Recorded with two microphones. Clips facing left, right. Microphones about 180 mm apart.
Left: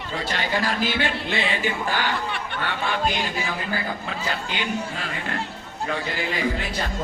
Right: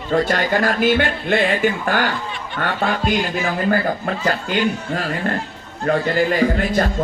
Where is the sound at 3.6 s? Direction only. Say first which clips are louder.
Right 9 dB; 50° right (ahead or behind).